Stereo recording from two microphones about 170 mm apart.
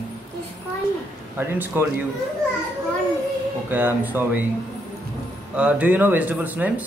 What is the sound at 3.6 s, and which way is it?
Speech, 10° right (ahead or behind).